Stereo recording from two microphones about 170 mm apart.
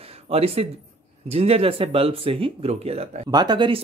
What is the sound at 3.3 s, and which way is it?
Speech, 25° right (ahead or behind).